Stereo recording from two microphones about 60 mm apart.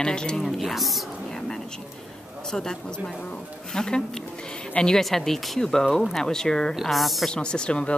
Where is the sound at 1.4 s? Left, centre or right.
Centre.